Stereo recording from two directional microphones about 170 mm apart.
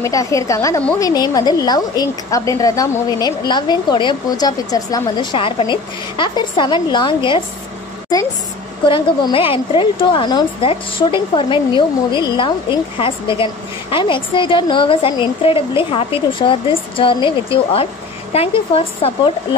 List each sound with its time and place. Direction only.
0.0 s a woman's voice: 20° left (ahead or behind)
8.8 s a woman's voice: 30° left (ahead or behind)